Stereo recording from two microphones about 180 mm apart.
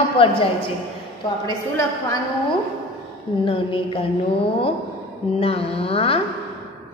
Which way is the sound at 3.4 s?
30° left (ahead or behind).